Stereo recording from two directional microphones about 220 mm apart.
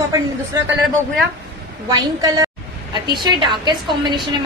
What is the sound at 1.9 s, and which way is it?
A woman's voice, 15° right (ahead or behind).